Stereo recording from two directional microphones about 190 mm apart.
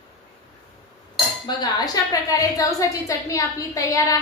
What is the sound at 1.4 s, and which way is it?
Speech, 20° left (ahead or behind).